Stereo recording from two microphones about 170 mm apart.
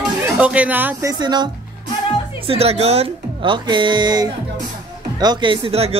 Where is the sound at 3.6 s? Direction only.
25° right (ahead or behind).